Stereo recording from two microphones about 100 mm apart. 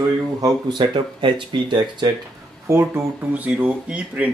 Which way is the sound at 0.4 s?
50° right (ahead or behind).